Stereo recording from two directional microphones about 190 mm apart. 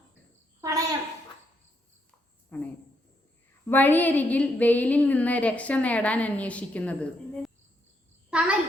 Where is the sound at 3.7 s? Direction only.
10° left (ahead or behind).